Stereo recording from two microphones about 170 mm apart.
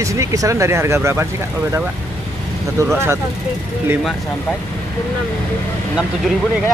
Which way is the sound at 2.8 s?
20° right (ahead or behind).